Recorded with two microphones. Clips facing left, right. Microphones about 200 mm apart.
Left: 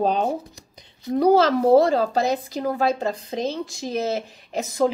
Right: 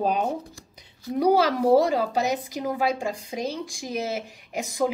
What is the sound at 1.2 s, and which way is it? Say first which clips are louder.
A woman's voice: left 3 dB; 10° right (ahead or behind).